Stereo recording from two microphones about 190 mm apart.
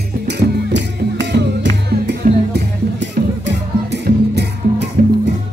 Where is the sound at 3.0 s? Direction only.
65° right (ahead or behind).